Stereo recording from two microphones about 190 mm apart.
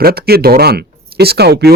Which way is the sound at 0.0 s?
55° right (ahead or behind).